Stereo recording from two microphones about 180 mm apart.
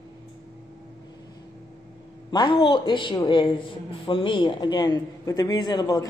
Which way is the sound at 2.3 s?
25° left (ahead or behind).